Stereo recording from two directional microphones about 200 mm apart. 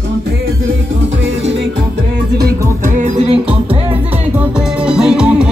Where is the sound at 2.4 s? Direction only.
40° right (ahead or behind).